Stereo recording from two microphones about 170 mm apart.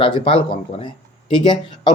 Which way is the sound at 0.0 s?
30° left (ahead or behind).